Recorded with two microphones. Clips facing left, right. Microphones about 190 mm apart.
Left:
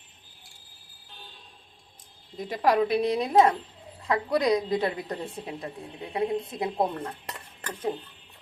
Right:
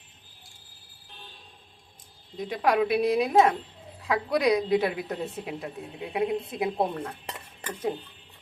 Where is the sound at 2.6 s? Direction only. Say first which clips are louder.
Left 1 dB; centre (ahead or behind).